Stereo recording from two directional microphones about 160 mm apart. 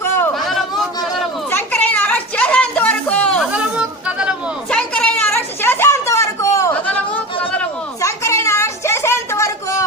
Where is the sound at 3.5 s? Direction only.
5° right (ahead or behind).